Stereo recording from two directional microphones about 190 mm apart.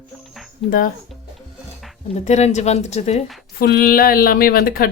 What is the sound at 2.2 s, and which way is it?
Speech, 35° left (ahead or behind).